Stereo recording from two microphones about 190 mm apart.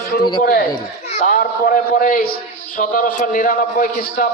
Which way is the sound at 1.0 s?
40° left (ahead or behind).